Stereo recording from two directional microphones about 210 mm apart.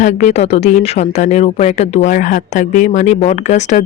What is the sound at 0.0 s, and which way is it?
Speech, 35° left (ahead or behind).